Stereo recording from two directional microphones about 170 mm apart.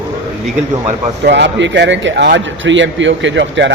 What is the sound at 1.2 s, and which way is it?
Speech, 90° right.